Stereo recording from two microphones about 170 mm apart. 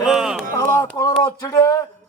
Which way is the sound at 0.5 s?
15° left (ahead or behind).